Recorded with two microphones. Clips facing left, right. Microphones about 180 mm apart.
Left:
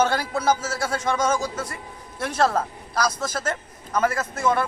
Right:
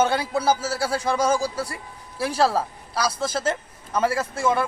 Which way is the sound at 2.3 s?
10° right (ahead or behind).